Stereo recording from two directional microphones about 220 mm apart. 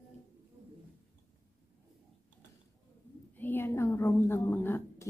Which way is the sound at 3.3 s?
10° left (ahead or behind).